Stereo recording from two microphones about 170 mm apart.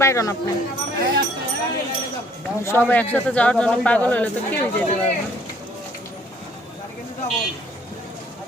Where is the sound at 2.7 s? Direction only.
10° left (ahead or behind).